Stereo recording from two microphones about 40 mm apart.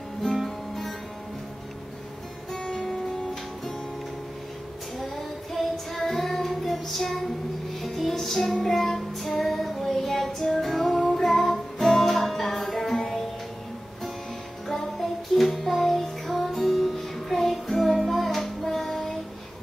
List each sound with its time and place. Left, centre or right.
2.5 s music: centre
4.9 s child singing: centre
7.8 s music: centre
8.5 s child singing: centre
11.1 s music: centre
14.7 s music: centre